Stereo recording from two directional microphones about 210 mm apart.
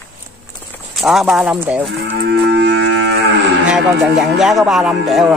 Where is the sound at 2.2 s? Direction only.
55° right (ahead or behind).